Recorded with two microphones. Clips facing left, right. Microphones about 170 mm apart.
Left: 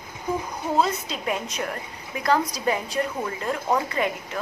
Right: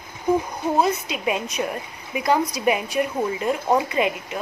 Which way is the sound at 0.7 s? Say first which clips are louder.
Right 1 dB; 15° right (ahead or behind).